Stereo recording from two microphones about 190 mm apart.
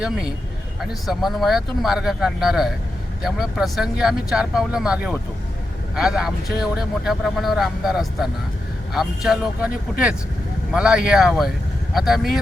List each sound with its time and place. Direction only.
0.8 s speech: centre (ahead or behind)
10.7 s speech: 5° right (ahead or behind)